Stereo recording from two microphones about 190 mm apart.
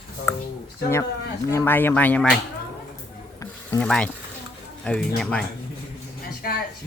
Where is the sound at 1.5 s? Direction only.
10° left (ahead or behind).